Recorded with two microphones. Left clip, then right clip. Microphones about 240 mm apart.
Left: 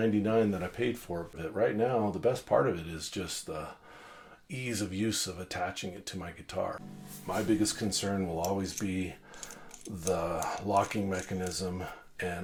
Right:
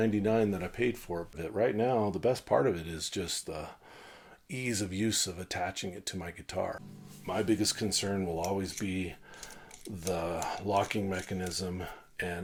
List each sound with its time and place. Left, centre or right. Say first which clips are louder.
0.0 s speech: left 1 dB; right
1.5 s speech: even; right
10.1 s speech: left 2 dB; right